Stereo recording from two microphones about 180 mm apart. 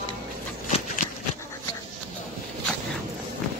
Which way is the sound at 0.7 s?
40° left (ahead or behind).